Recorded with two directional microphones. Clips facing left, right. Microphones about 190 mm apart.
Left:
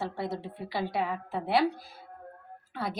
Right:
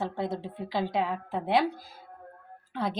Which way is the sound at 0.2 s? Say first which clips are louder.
Right 2 dB; 20° right (ahead or behind).